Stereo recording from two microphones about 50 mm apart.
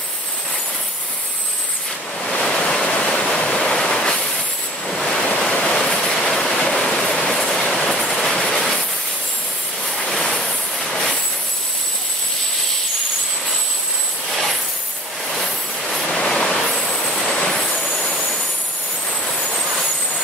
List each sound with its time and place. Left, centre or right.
2.2 s waves: centre
3.1 s waterfall: centre
3.3 s waterfall: left
3.6 s train: centre
4.8 s waves: centre
5.5 s waterfall: centre
7.2 s train: centre
10.0 s vehicle: centre
15.3 s vehicle: centre